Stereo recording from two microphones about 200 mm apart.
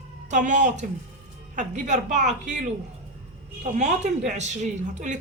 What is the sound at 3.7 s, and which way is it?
A woman's voice, 35° right (ahead or behind).